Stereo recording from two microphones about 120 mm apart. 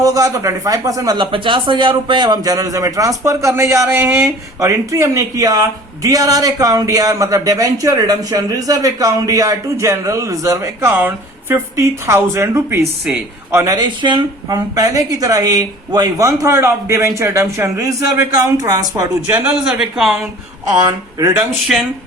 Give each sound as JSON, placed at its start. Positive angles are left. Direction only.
{"t": 0.0, "sound": "a man's voice", "side_deg": -30}
{"t": 13.7, "sound": "a man's voice", "side_deg": -40}
{"t": 19.3, "sound": "speech", "side_deg": -10}
{"t": 20.7, "sound": "speech", "side_deg": -30}